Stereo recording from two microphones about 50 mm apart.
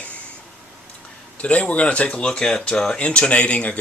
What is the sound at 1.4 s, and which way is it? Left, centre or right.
Speech, left.